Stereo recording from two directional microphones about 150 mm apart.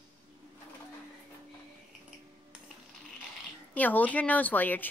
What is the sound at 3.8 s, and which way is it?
Speech, 10° left (ahead or behind).